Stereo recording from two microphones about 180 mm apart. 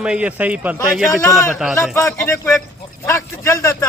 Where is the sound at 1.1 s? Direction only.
15° left (ahead or behind).